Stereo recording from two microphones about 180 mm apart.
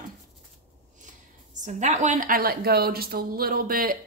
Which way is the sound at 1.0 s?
45° right (ahead or behind).